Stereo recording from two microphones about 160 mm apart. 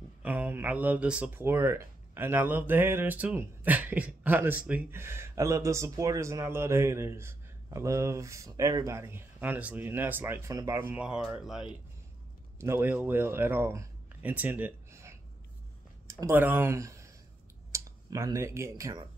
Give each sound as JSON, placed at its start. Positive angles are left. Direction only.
{"t": 0.2, "sound": "speech", "side_deg": -10}